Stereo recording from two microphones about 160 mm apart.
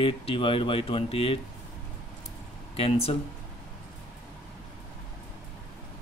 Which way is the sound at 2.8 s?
35° left (ahead or behind).